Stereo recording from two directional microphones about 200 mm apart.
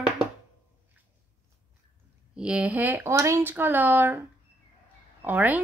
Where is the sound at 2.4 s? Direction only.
5° right (ahead or behind).